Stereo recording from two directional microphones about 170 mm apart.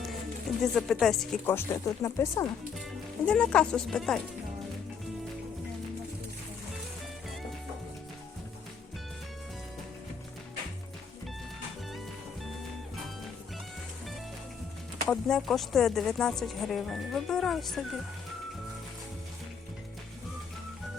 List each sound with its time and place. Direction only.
0.6 s speech: centre (ahead or behind)
1.5 s speech: 15° left (ahead or behind)
3.2 s speech: 5° left (ahead or behind)
15.1 s speech: 5° left (ahead or behind)